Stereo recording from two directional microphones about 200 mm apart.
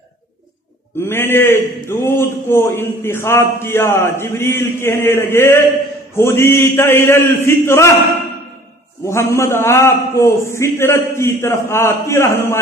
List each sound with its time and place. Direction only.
1.0 s a man's voice: 10° left (ahead or behind)
9.0 s a man's voice: 15° left (ahead or behind)